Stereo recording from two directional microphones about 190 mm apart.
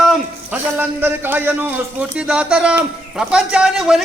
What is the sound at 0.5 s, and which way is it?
Music, 10° right (ahead or behind).